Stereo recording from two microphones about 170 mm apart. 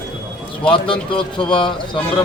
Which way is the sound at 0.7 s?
30° left (ahead or behind).